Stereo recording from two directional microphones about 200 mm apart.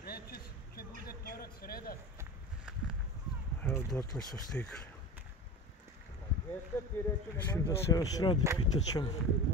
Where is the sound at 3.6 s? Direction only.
5° left (ahead or behind).